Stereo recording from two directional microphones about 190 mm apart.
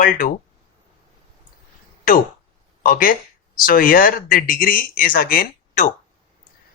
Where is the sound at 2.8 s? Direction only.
50° left (ahead or behind).